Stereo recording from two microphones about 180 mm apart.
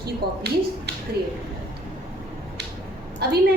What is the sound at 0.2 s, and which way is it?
Speech, 60° right (ahead or behind).